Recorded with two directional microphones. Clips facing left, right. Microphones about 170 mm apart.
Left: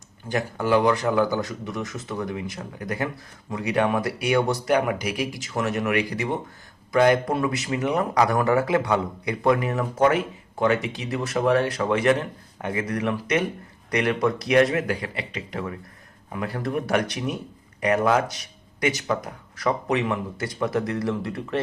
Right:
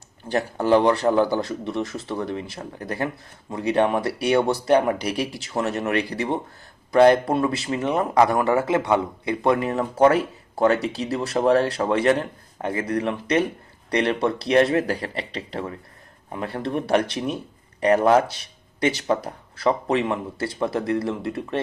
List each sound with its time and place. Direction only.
0.3 s speech: 35° right (ahead or behind)